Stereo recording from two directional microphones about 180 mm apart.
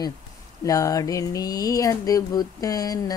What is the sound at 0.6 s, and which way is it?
Speech, 20° left (ahead or behind).